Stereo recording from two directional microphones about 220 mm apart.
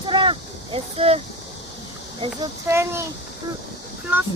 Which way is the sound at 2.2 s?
15° right (ahead or behind).